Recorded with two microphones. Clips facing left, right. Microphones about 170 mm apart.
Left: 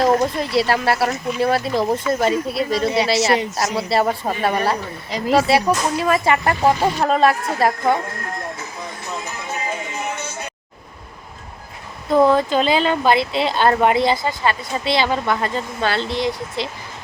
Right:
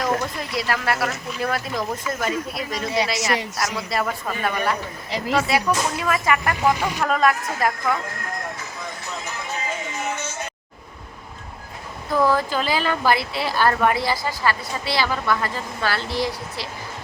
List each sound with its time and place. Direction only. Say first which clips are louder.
0.0 s speech: left 7 dB; 30° left (ahead or behind)
12.1 s speech: left 5 dB; 25° left (ahead or behind)